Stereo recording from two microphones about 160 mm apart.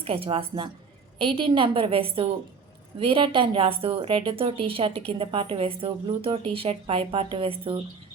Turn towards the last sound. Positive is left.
turn(degrees=-35)  # may be behind; listen again after turning